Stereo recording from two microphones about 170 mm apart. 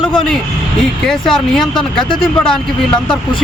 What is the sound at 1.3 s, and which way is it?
Speech, 5° left (ahead or behind).